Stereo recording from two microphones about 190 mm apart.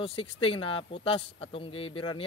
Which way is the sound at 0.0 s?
30° left (ahead or behind).